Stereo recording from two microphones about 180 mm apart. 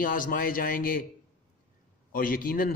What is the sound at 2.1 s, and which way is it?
Speech, 55° left (ahead or behind).